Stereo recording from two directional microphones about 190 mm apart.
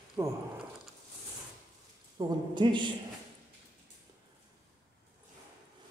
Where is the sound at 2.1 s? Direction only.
25° right (ahead or behind).